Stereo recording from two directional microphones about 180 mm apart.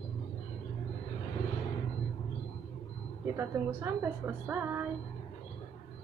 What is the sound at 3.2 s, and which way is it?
A woman's voice, 15° right (ahead or behind).